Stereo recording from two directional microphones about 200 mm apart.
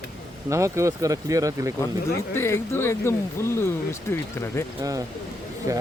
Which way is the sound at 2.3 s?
10° left (ahead or behind).